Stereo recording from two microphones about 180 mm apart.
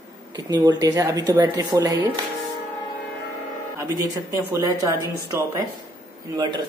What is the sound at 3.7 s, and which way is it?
Speech, 15° right (ahead or behind).